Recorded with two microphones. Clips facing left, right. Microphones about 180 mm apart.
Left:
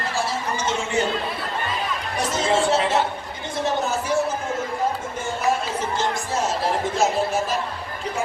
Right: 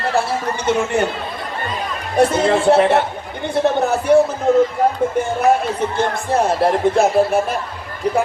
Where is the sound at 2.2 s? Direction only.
55° right (ahead or behind).